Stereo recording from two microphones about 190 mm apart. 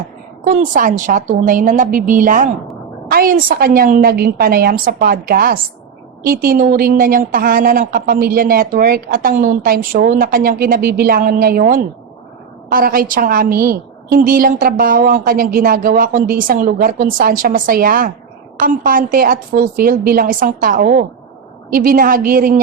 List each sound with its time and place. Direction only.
0.4 s a woman's voice: 40° right (ahead or behind)